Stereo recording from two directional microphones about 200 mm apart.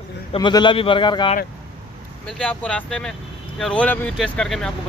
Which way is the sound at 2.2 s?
5° left (ahead or behind).